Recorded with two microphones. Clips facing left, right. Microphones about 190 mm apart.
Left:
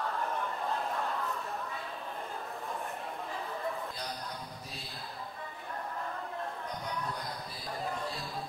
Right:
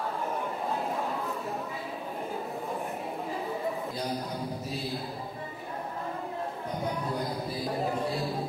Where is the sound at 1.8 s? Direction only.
10° right (ahead or behind).